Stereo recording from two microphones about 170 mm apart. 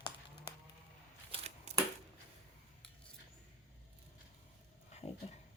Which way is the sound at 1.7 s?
40° right (ahead or behind).